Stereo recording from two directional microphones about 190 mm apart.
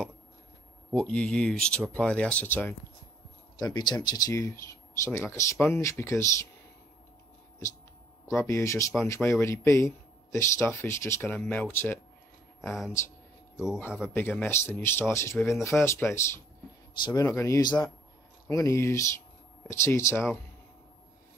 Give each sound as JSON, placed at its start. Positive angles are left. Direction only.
{"t": 0.9, "sound": "speech", "side_deg": 5}
{"t": 3.5, "sound": "speech", "side_deg": 20}
{"t": 8.4, "sound": "speech", "side_deg": 15}
{"t": 12.6, "sound": "speech", "side_deg": 0}
{"t": 14.1, "sound": "speech", "side_deg": 10}